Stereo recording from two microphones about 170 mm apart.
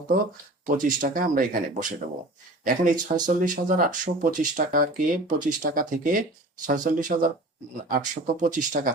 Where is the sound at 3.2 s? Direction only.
50° right (ahead or behind).